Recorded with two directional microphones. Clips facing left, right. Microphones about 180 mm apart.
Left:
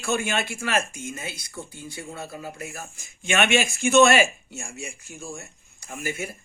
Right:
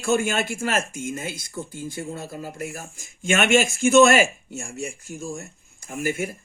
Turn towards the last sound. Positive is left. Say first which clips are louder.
# right 5 dB
turn(degrees=-50)  # may be behind; listen again after turning